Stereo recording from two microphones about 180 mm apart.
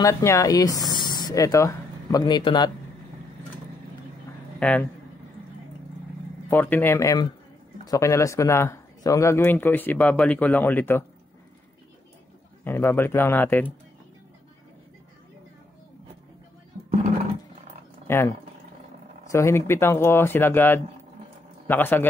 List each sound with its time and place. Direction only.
0.0 s speech: 15° left (ahead or behind)
4.6 s speech: 10° left (ahead or behind)
6.5 s speech: 10° left (ahead or behind)
12.6 s speech: 10° left (ahead or behind)
18.0 s speech: 15° left (ahead or behind)
19.3 s speech: 15° left (ahead or behind)